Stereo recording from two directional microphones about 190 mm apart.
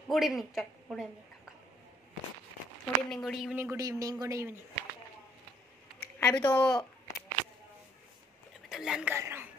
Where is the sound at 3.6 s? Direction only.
15° right (ahead or behind).